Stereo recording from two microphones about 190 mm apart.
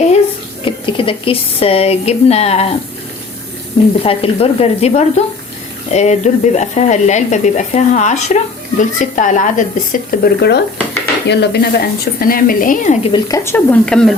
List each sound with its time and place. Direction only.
0.6 s speech: 30° left (ahead or behind)
4.0 s speech: 30° left (ahead or behind)
13.1 s speech: 20° left (ahead or behind)